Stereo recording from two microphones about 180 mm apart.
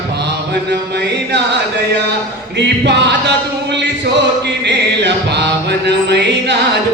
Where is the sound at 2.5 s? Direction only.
75° right (ahead or behind).